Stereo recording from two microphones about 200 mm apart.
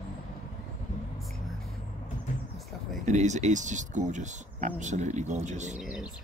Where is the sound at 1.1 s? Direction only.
Centre (ahead or behind).